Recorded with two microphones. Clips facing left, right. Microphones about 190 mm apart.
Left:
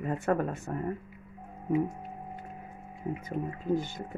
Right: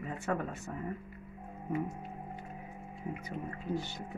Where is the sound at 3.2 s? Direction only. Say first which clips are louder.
Left 9 dB; 50° left (ahead or behind).